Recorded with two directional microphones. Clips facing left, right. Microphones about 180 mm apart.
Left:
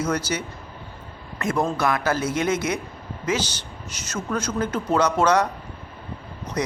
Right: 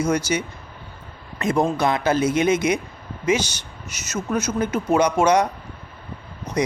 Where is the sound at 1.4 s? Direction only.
20° right (ahead or behind).